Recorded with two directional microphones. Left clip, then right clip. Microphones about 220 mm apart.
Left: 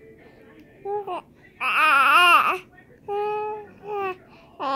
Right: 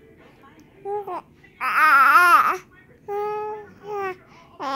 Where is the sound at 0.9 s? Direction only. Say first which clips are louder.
Even; 10° right (ahead or behind).